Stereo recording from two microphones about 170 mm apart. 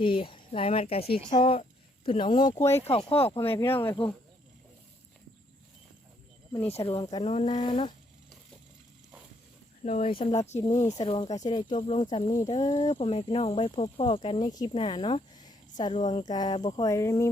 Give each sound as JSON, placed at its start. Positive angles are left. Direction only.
{"t": 0.0, "sound": "speech", "side_deg": 30}
{"t": 2.6, "sound": "speech", "side_deg": 15}
{"t": 3.1, "sound": "speech", "side_deg": 35}
{"t": 3.3, "sound": "speech", "side_deg": 15}
{"t": 4.0, "sound": "speech", "side_deg": 35}
{"t": 6.7, "sound": "speech", "side_deg": 35}
{"t": 9.8, "sound": "speech", "side_deg": 40}
{"t": 11.0, "sound": "speech", "side_deg": 25}